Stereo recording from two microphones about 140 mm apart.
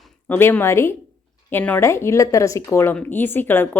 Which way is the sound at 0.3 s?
15° left (ahead or behind).